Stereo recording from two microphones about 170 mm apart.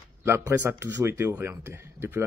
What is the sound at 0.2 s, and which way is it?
Speech, 15° right (ahead or behind).